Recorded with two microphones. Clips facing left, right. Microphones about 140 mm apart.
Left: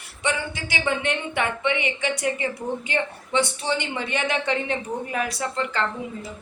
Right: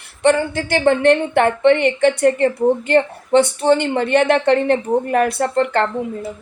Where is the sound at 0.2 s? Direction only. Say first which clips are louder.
Right 12 dB; 55° right (ahead or behind).